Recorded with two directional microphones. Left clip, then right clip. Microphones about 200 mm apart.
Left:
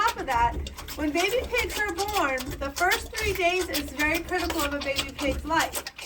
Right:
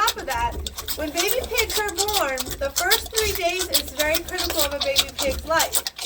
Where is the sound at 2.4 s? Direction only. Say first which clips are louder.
Right 2 dB; 20° right (ahead or behind).